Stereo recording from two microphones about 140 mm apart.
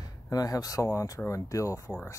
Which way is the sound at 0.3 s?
25° left (ahead or behind).